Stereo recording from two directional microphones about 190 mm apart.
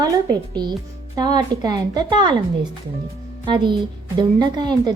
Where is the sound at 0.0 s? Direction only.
20° right (ahead or behind).